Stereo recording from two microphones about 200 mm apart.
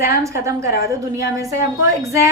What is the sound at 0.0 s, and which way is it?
A woman's voice, 15° right (ahead or behind).